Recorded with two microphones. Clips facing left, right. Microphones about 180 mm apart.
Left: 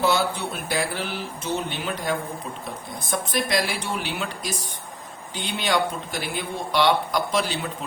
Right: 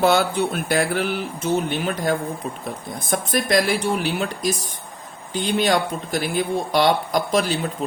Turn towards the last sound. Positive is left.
turn(degrees=-45)  # may be behind; listen again after turning